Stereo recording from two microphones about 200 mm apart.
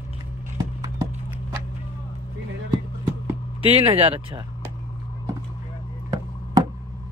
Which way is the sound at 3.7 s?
30° right (ahead or behind).